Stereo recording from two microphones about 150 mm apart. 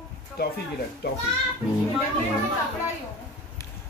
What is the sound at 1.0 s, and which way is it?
Speech, 90° left.